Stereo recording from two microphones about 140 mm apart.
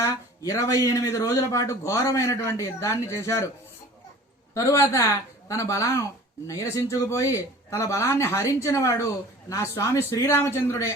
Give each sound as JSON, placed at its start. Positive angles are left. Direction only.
{"t": 0.0, "sound": "a man's voice", "side_deg": 20}
{"t": 4.5, "sound": "a man's voice", "side_deg": 20}